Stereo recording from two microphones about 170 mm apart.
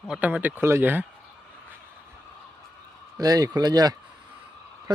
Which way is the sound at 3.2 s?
20° right (ahead or behind).